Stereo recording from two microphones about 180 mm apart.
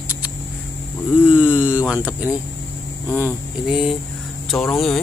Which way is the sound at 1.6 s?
10° right (ahead or behind).